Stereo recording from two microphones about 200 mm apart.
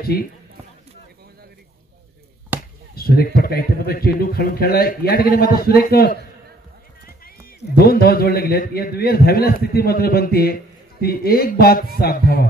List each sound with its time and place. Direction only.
0.1 s a man's voice: 50° left (ahead or behind)
2.5 s chop: 10° right (ahead or behind)
2.9 s a man's voice: 50° left (ahead or behind)
7.2 s a man's voice: 50° left (ahead or behind)